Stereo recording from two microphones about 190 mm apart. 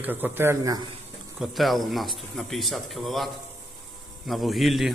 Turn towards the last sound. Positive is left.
turn(degrees=0)  # may be behind; listen again after turning